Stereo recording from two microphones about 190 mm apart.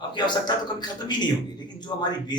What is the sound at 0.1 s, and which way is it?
Speech, 20° left (ahead or behind).